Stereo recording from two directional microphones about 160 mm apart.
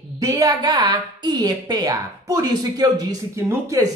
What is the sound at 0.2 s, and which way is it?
Speech, 25° right (ahead or behind).